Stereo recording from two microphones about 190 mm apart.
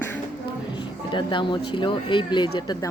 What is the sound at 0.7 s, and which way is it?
Speech, 25° left (ahead or behind).